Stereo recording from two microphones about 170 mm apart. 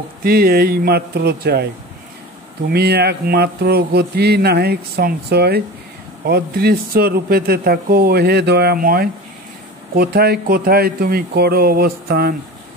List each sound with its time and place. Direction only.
0.2 s speech: 60° right (ahead or behind)
2.7 s speech: 70° right (ahead or behind)